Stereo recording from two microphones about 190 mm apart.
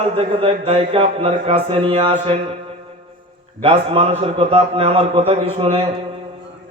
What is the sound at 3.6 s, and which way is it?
Music, 30° right (ahead or behind).